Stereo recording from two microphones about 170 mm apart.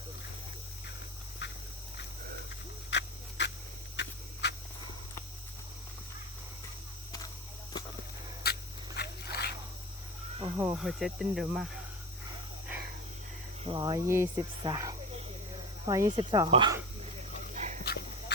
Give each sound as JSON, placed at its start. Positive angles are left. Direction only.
{"t": 1.4, "sound": "dog", "side_deg": 90}
{"t": 2.9, "sound": "a sound", "side_deg": 90}
{"t": 8.4, "sound": "dog", "side_deg": 65}
{"t": 9.0, "sound": "a sound", "side_deg": 70}
{"t": 10.4, "sound": "speech", "side_deg": -15}
{"t": 10.8, "sound": "speech", "side_deg": 0}
{"t": 13.7, "sound": "cricket", "side_deg": -25}
{"t": 17.5, "sound": "dog", "side_deg": -45}